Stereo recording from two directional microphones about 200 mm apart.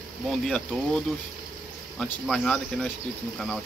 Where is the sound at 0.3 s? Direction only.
5° left (ahead or behind).